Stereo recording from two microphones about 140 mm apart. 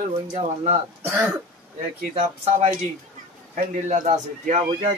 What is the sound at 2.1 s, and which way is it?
Speech, 45° right (ahead or behind).